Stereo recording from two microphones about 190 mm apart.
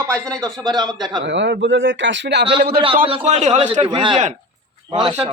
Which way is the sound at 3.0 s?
30° right (ahead or behind).